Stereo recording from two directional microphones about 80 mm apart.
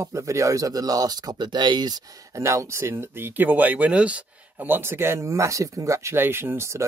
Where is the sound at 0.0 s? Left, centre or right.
Right.